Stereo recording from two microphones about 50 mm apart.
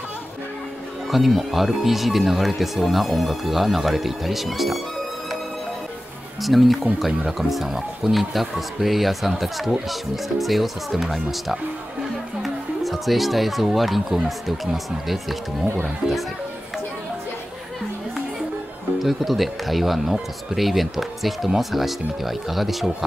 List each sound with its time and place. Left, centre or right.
1.1 s speech: centre
6.4 s speech: centre
18.9 s speech: centre